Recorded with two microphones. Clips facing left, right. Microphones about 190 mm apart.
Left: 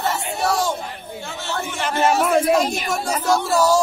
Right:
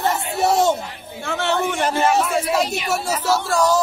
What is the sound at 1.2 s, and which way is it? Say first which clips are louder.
Speech: right 8 dB; 65° right (ahead or behind).